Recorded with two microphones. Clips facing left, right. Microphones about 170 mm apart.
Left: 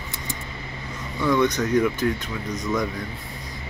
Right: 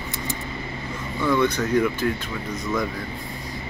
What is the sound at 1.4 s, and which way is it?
Speech, 15° left (ahead or behind).